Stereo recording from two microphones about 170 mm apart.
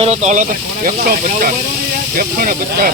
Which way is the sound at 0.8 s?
55° right (ahead or behind).